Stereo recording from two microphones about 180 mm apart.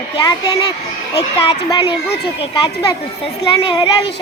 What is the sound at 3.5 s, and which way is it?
Speech, 25° left (ahead or behind).